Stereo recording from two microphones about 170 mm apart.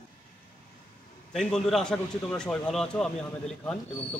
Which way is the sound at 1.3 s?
Centre (ahead or behind).